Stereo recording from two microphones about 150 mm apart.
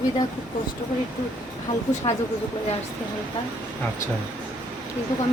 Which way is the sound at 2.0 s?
30° left (ahead or behind).